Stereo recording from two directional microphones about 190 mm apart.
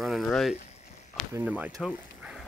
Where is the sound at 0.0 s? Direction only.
Centre (ahead or behind).